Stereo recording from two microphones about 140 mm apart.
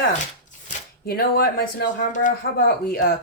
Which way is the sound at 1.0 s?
90° left.